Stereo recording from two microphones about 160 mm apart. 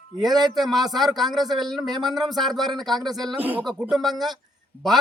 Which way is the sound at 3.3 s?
10° right (ahead or behind).